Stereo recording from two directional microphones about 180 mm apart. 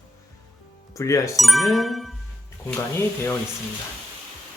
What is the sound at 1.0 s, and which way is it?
Speech, 15° left (ahead or behind).